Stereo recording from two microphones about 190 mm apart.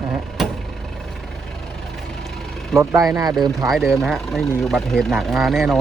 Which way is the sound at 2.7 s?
15° right (ahead or behind).